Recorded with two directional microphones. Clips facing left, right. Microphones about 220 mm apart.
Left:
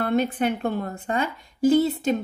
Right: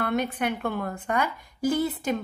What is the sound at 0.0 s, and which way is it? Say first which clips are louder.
A woman's voice: left 4 dB; 30° left (ahead or behind).